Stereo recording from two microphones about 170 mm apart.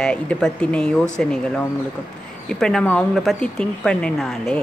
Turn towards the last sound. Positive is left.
turn(degrees=0)  # may be behind; listen again after turning